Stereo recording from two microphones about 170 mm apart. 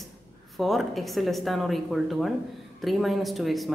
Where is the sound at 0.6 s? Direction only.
Centre (ahead or behind).